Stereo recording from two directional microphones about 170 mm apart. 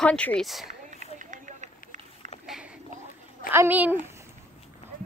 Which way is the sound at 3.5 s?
10° right (ahead or behind).